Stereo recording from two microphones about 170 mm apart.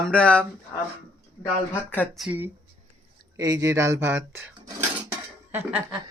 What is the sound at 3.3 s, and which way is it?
Speech, 20° right (ahead or behind).